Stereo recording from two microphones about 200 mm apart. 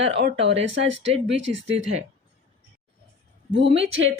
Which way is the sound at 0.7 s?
65° right (ahead or behind).